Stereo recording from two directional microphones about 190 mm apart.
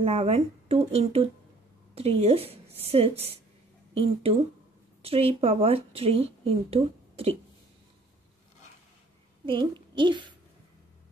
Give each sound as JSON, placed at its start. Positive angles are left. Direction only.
{"t": 0.0, "sound": "speech", "side_deg": -30}
{"t": 9.5, "sound": "a woman's voice", "side_deg": -25}